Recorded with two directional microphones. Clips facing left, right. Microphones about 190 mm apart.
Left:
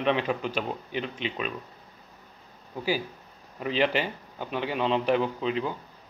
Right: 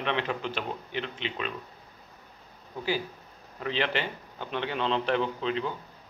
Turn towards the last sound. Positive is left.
turn(degrees=10)  # may be behind; listen again after turning